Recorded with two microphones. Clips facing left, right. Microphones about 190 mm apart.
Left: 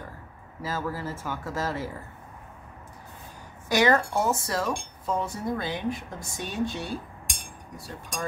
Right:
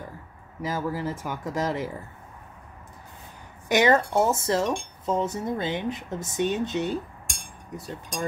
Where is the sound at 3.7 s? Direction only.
20° right (ahead or behind).